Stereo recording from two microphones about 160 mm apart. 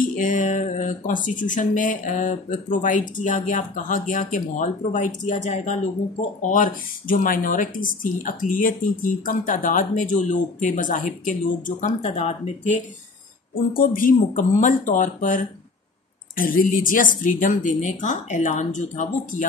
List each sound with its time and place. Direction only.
0.0 s speech: 60° left (ahead or behind)
6.4 s speech: 55° left (ahead or behind); by 12.8 s 40° left (ahead or behind)
13.7 s a woman's voice: 55° left (ahead or behind)